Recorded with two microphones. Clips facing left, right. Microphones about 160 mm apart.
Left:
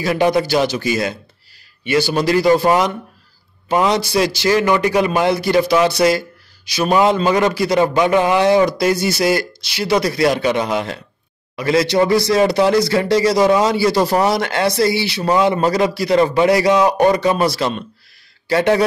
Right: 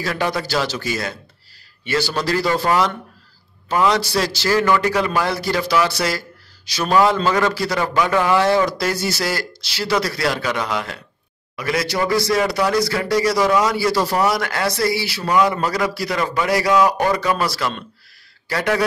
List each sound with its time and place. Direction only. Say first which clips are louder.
0.0 s speech: left 7 dB; 20° left (ahead or behind)